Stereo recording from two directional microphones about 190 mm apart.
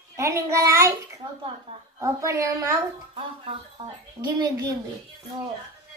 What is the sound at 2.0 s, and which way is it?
Speech, 15° right (ahead or behind).